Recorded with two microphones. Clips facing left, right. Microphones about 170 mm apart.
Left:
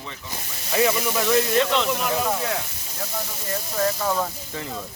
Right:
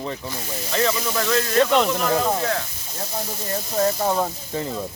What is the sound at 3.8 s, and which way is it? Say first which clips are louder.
Speech: right 3 dB; 35° right (ahead or behind).